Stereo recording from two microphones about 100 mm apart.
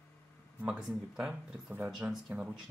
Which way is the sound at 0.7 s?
5° right (ahead or behind).